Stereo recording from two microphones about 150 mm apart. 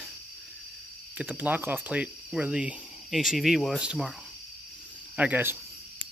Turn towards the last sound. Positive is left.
turn(degrees=-10)  # may be behind; listen again after turning